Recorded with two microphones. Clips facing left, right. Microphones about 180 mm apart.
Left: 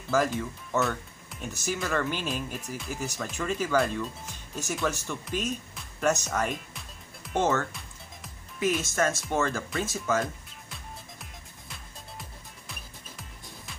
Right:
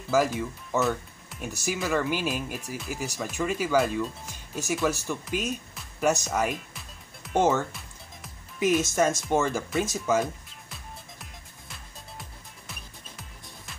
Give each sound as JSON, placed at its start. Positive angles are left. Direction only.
{"t": 0.1, "sound": "speech", "side_deg": -5}
{"t": 10.2, "sound": "music", "side_deg": 0}